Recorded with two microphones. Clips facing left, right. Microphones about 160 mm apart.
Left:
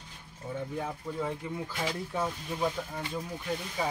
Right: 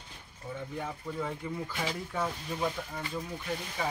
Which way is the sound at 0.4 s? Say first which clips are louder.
Left 3 dB; 20° left (ahead or behind).